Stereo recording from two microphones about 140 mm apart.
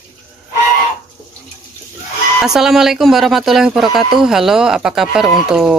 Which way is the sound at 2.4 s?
5° right (ahead or behind).